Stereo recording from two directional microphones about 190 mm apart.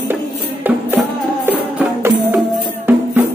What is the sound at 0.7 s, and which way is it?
Music, 10° right (ahead or behind).